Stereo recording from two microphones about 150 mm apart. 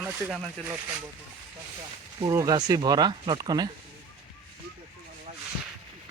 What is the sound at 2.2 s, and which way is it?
Speech, 25° right (ahead or behind).